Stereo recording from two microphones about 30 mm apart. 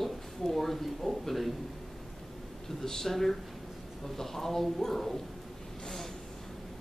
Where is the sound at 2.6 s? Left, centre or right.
Centre.